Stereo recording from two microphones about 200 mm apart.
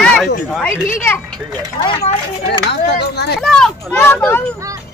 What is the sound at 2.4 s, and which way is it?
Speech, 55° left (ahead or behind).